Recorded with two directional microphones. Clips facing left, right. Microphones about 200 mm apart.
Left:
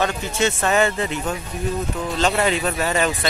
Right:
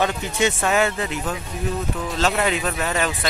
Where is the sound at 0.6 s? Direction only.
5° right (ahead or behind).